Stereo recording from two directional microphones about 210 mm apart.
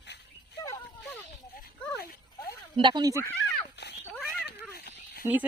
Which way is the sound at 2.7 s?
20° right (ahead or behind).